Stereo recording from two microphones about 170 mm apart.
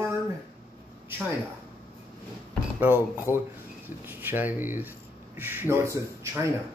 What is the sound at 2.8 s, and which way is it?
Speech, 10° right (ahead or behind).